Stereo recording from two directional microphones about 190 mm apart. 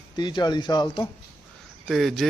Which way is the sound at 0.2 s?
25° left (ahead or behind).